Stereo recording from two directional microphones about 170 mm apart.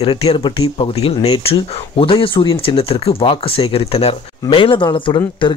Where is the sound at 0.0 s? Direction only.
35° left (ahead or behind).